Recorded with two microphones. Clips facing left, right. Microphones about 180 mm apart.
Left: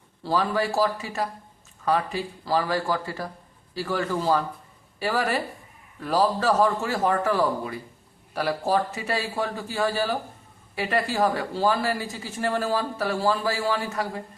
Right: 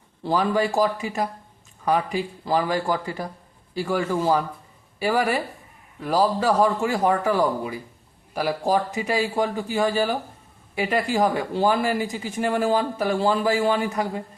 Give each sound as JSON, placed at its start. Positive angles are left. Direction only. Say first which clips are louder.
{"t": 0.2, "sound": "speech", "louder": "right 3 dB", "side_deg": -20}